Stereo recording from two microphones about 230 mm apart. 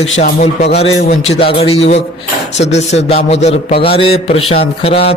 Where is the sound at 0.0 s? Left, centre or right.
Left.